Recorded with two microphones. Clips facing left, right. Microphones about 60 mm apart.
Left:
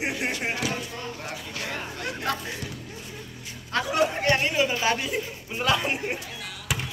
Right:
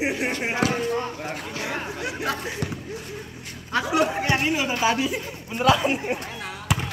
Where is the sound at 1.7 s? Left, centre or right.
Centre.